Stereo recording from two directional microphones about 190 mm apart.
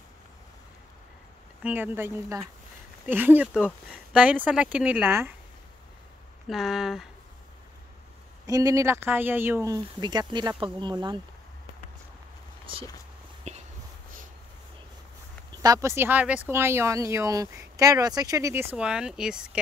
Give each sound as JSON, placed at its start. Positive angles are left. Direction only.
{"t": 1.6, "sound": "speech", "side_deg": -10}
{"t": 6.4, "sound": "speech", "side_deg": 0}
{"t": 8.5, "sound": "speech", "side_deg": -20}
{"t": 12.7, "sound": "speech", "side_deg": -30}
{"t": 13.5, "sound": "a sound", "side_deg": -35}
{"t": 15.6, "sound": "speech", "side_deg": -15}